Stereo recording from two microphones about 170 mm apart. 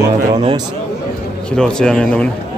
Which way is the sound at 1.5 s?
5° left (ahead or behind).